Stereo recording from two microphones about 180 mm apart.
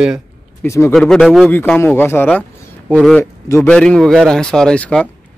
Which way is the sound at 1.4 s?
10° left (ahead or behind).